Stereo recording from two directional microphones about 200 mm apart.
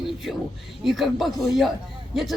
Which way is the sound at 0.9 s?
Centre (ahead or behind).